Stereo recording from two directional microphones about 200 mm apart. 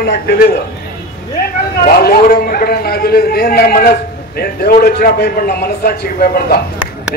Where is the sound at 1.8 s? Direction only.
50° left (ahead or behind).